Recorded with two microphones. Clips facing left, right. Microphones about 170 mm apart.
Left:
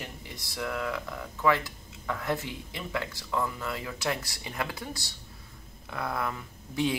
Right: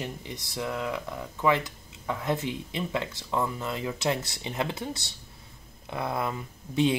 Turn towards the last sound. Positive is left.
turn(degrees=-20)  # may be behind; listen again after turning